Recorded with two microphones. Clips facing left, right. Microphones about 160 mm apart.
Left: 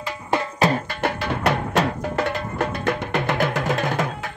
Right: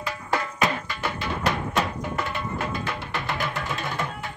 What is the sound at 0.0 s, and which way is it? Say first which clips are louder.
Music: left 3 dB; 25° left (ahead or behind).